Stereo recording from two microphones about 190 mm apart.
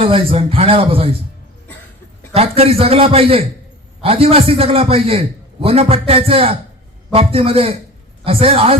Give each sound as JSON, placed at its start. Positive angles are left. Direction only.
{"t": 0.0, "sound": "a man's voice", "side_deg": -30}
{"t": 2.3, "sound": "a man's voice", "side_deg": -30}